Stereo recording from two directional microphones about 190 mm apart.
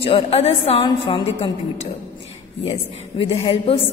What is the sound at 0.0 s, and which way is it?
A woman's voice, 30° left (ahead or behind).